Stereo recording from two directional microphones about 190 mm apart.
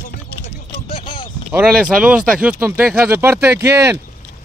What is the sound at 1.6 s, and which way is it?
Speech, 5° right (ahead or behind).